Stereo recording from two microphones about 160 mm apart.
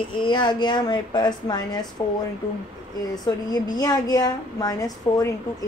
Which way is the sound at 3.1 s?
25° left (ahead or behind).